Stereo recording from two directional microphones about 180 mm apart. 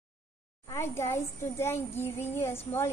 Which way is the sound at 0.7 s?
15° left (ahead or behind).